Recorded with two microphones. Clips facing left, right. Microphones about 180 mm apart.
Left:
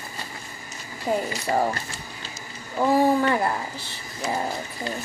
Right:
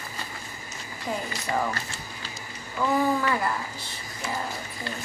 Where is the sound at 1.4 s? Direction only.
35° left (ahead or behind).